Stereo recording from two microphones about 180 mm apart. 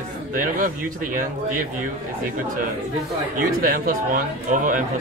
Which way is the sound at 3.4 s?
55° right (ahead or behind).